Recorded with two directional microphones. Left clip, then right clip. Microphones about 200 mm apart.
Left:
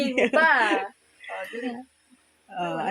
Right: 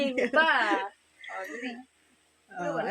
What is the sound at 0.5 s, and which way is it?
Speech, 10° left (ahead or behind).